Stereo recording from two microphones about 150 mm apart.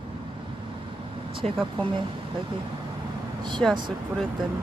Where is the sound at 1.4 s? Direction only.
50° right (ahead or behind).